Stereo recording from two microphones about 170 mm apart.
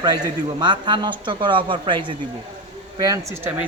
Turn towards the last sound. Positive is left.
turn(degrees=-20)  # may be behind; listen again after turning